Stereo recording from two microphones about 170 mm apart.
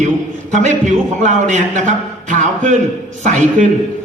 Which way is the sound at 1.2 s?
45° right (ahead or behind).